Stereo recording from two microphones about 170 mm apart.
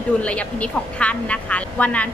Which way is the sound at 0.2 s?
5° left (ahead or behind).